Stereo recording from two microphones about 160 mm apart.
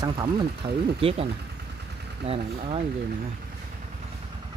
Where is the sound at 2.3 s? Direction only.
35° right (ahead or behind).